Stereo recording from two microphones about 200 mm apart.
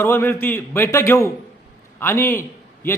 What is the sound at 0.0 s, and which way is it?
A man's voice, 15° left (ahead or behind).